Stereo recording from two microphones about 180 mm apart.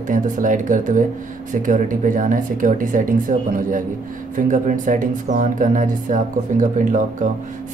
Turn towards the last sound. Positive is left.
turn(degrees=-45)  # may be behind; listen again after turning